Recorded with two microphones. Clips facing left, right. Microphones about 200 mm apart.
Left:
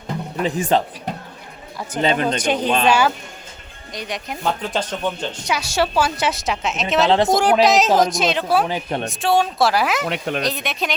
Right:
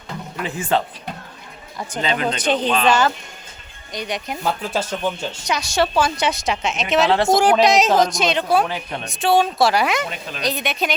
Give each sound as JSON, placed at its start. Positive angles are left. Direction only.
{"t": 0.4, "sound": "speech", "side_deg": 15}
{"t": 2.0, "sound": "speech", "side_deg": 50}
{"t": 2.4, "sound": "speech", "side_deg": 10}
{"t": 5.5, "sound": "a woman's voice", "side_deg": 10}
{"t": 7.1, "sound": "speech", "side_deg": 20}
{"t": 7.3, "sound": "a woman's voice", "side_deg": 0}
{"t": 10.1, "sound": "speech", "side_deg": 65}
{"t": 10.4, "sound": "a woman's voice", "side_deg": 0}